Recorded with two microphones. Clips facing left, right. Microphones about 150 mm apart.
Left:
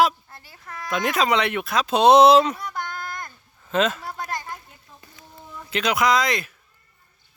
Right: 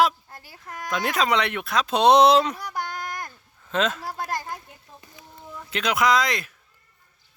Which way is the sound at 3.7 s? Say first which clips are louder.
Left 2 dB; 5° left (ahead or behind).